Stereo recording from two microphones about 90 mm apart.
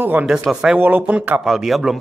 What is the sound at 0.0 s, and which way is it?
Speech, 20° right (ahead or behind).